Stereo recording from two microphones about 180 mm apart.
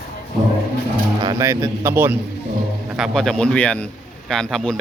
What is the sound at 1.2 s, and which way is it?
Speech, 15° right (ahead or behind).